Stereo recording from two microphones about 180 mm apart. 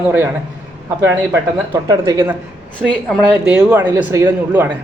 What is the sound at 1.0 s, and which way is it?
A man's voice, 15° right (ahead or behind).